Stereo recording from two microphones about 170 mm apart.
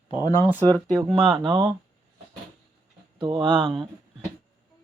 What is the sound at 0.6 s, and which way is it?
Speech, 5° left (ahead or behind).